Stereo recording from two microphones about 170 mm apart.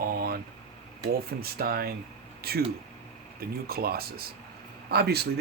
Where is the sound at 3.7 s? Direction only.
65° right (ahead or behind).